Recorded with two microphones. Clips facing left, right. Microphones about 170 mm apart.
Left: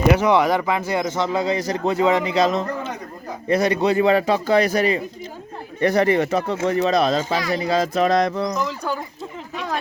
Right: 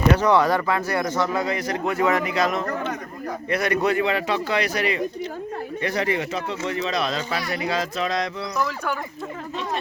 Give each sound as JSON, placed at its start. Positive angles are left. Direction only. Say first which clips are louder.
{"t": 0.1, "sound": "a man's voice", "louder": "left 2 dB", "side_deg": 10}
{"t": 3.7, "sound": "a man's voice", "louder": "left 3 dB", "side_deg": 30}
{"t": 8.5, "sound": "speech", "louder": "left 1 dB", "side_deg": 15}